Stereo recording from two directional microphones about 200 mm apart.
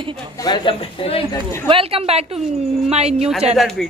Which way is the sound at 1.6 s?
25° right (ahead or behind).